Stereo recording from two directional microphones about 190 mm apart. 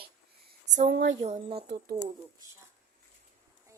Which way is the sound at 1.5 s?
55° right (ahead or behind).